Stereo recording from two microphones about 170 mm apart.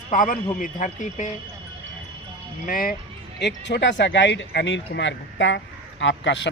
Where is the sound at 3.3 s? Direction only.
85° left.